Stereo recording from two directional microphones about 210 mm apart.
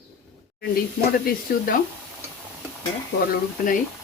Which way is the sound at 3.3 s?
40° left (ahead or behind).